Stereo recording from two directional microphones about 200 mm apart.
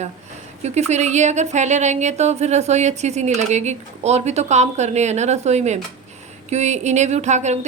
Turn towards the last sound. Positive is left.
turn(degrees=-35)  # may be behind; listen again after turning